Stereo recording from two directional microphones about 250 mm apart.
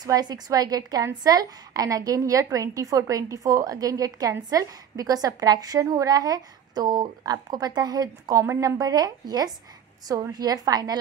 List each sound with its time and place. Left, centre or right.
0.0 s a woman's voice: centre